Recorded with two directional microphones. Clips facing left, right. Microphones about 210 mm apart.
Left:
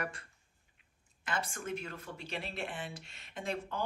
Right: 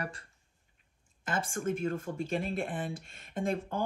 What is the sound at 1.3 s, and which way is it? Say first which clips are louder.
Speech: right 5 dB; 50° right (ahead or behind).